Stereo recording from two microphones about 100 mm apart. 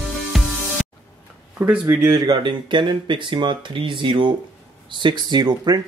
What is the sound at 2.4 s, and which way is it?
Speech, 55° right (ahead or behind).